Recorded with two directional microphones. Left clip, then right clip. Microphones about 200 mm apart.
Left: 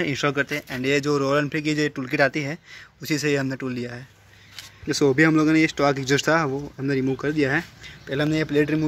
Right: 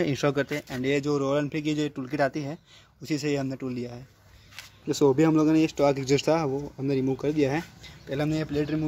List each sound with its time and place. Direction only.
0.0 s speech: 20° right (ahead or behind); by 8.3 s centre (ahead or behind)
8.3 s a man's voice: 10° left (ahead or behind)